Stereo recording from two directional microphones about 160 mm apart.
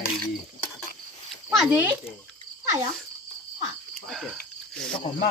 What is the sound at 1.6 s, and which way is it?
Speech, 10° right (ahead or behind).